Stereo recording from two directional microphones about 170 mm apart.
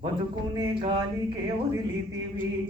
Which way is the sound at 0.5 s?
25° right (ahead or behind).